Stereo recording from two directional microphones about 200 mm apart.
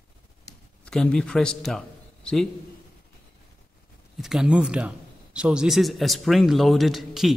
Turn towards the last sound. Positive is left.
turn(degrees=0)  # may be behind; listen again after turning